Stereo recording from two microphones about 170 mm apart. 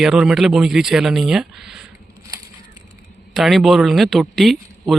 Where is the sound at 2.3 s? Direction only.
20° right (ahead or behind).